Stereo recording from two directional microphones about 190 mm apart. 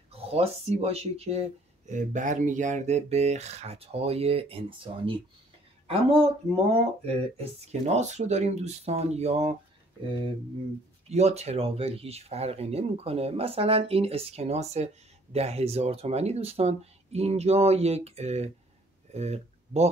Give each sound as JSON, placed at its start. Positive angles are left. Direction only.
{"t": 0.1, "sound": "speech", "side_deg": -30}
{"t": 6.7, "sound": "speech", "side_deg": -30}
{"t": 11.1, "sound": "speech", "side_deg": -35}